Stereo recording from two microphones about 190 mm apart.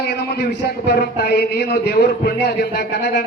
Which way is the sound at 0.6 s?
60° left (ahead or behind).